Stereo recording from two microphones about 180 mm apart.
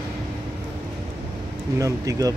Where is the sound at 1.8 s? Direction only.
20° right (ahead or behind).